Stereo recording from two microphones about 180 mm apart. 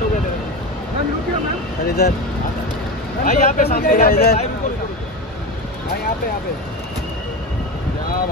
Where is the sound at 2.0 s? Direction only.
60° left (ahead or behind).